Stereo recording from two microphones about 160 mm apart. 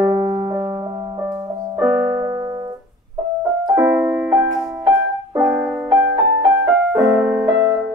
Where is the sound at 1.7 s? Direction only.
15° right (ahead or behind).